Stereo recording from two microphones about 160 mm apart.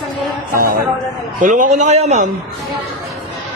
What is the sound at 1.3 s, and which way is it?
Speech, 50° right (ahead or behind).